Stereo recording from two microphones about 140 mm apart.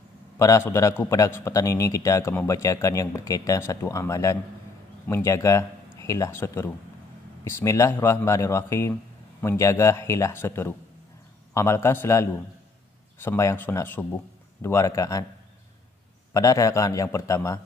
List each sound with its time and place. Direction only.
0.4 s a man's voice: 20° left (ahead or behind)
16.3 s a man's voice: 25° left (ahead or behind)